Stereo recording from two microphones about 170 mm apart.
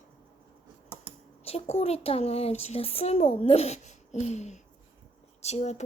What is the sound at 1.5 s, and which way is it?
Speech, 35° left (ahead or behind).